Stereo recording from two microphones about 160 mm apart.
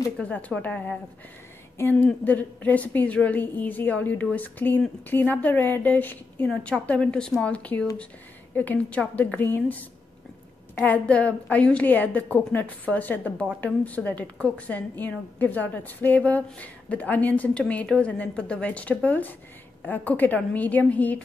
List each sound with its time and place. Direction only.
0.2 s a woman's voice: 10° left (ahead or behind)